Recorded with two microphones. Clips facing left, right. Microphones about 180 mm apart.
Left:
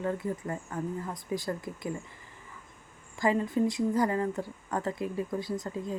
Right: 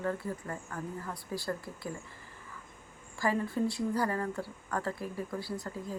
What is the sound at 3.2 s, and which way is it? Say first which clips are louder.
A woman's voice: left 4 dB; 20° left (ahead or behind).